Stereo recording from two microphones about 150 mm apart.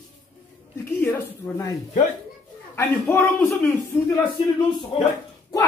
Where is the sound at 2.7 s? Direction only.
15° left (ahead or behind).